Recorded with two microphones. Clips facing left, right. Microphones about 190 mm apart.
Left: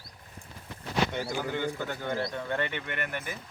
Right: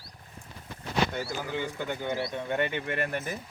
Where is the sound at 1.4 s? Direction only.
10° right (ahead or behind); by 3.3 s 35° right (ahead or behind).